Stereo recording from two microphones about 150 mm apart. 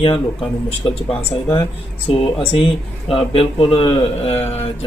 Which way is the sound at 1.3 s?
35° left (ahead or behind).